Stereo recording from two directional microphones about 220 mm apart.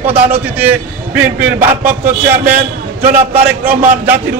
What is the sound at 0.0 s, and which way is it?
A man's voice, 10° right (ahead or behind).